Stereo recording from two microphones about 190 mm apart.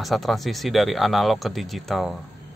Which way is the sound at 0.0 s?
Centre (ahead or behind).